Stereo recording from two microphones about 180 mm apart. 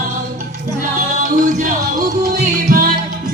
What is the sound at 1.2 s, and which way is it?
Music, 45° right (ahead or behind).